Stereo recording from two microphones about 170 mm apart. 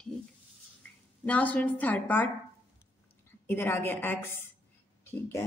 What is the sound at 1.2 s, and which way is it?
A woman's voice, 10° left (ahead or behind).